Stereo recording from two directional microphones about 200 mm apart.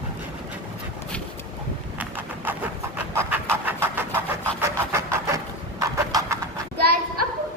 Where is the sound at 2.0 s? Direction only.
10° right (ahead or behind).